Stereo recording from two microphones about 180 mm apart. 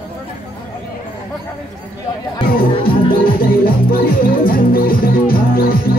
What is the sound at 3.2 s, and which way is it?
Music, 55° left (ahead or behind).